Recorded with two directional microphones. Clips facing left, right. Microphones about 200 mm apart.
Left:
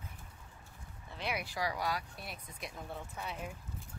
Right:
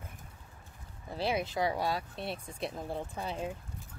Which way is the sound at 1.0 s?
30° right (ahead or behind).